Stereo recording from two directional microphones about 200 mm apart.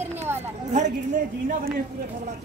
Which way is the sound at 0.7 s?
40° right (ahead or behind).